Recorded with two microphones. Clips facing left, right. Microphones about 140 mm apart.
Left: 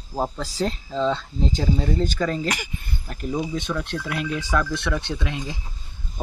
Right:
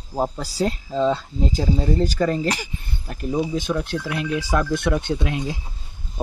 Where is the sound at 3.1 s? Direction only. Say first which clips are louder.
Right 3 dB; 15° right (ahead or behind).